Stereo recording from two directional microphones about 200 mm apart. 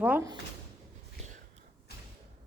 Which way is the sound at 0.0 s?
10° right (ahead or behind).